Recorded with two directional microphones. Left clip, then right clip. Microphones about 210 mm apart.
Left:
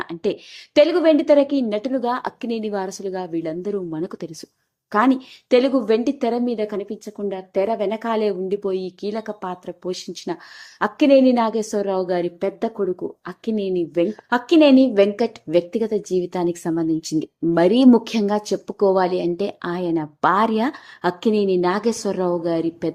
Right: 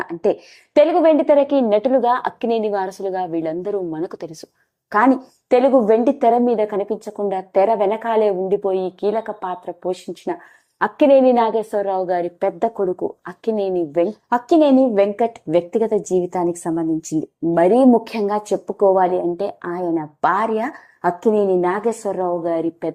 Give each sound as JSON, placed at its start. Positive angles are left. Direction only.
{"t": 0.8, "sound": "a woman's voice", "side_deg": 5}
{"t": 14.9, "sound": "speech", "side_deg": 20}
{"t": 16.0, "sound": "a woman's voice", "side_deg": -15}
{"t": 16.3, "sound": "a woman's voice", "side_deg": 15}
{"t": 20.2, "sound": "speech", "side_deg": 25}